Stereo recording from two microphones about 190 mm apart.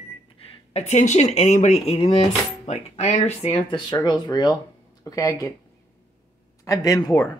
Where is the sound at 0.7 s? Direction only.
35° left (ahead or behind).